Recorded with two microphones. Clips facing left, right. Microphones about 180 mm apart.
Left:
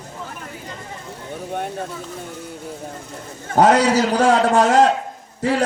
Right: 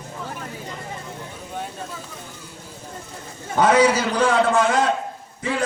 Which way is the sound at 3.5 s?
40° left (ahead or behind).